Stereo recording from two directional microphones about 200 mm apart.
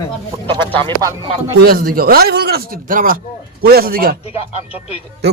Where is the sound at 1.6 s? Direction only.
50° right (ahead or behind).